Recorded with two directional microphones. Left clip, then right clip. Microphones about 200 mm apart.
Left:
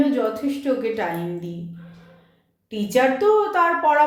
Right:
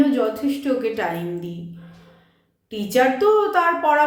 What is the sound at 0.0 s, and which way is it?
A woman's voice, 5° right (ahead or behind).